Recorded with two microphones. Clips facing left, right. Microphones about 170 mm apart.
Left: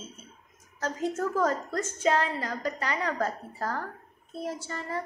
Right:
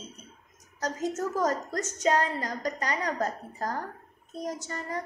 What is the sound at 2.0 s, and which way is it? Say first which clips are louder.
Speech: right 1 dB; 45° right (ahead or behind).